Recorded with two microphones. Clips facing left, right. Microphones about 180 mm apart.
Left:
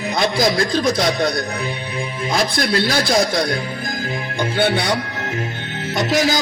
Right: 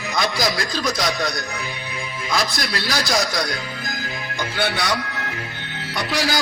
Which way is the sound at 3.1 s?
25° left (ahead or behind).